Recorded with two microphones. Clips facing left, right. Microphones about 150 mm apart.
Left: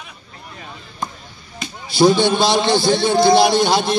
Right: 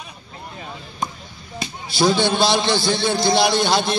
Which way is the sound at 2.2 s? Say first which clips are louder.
Left 2 dB; 20° left (ahead or behind).